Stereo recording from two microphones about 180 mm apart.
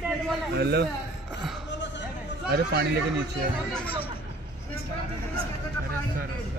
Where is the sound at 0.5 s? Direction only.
65° right (ahead or behind).